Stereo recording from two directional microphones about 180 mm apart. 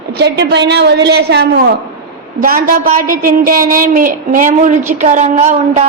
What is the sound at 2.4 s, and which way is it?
A woman's voice, 50° right (ahead or behind).